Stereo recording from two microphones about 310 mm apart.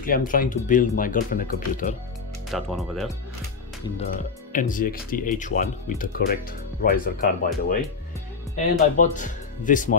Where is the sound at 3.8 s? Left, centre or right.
Centre.